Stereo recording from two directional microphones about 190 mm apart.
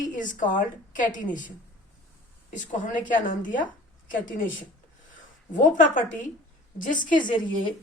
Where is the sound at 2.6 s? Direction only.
40° left (ahead or behind).